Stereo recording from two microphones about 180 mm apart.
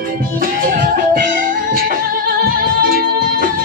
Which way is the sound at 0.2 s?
50° right (ahead or behind).